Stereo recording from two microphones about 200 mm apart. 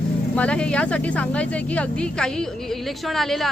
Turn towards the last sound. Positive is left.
turn(degrees=0)  # may be behind; listen again after turning